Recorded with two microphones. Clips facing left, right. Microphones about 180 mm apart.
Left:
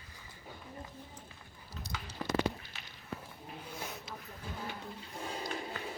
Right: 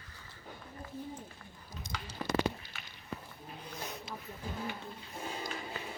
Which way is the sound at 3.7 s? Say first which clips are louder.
Right 1 dB; 10° left (ahead or behind).